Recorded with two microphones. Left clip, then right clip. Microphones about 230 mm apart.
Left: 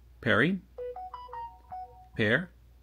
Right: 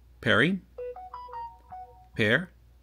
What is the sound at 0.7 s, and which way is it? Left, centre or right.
Music, centre.